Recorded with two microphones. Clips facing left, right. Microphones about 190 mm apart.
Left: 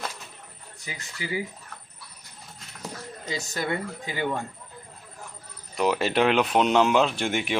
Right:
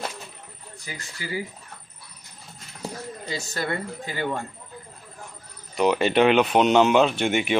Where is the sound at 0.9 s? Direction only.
20° left (ahead or behind).